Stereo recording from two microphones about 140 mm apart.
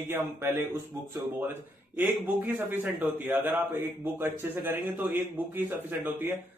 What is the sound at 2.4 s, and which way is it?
Speech, 15° right (ahead or behind).